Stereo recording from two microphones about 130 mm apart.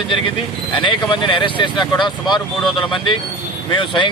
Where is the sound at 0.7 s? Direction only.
40° left (ahead or behind).